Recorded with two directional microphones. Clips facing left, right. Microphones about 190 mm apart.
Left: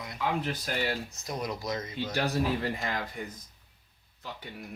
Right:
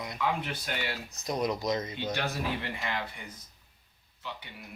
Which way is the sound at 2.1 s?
35° left (ahead or behind).